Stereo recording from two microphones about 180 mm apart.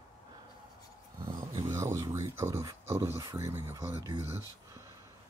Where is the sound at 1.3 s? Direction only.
20° right (ahead or behind).